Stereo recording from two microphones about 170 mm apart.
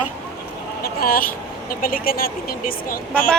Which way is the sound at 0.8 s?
60° left (ahead or behind).